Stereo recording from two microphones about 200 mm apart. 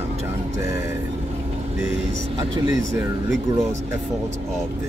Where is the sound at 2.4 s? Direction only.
15° right (ahead or behind).